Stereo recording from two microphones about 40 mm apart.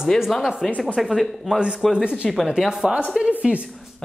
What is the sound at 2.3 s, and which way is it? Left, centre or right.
Speech, centre.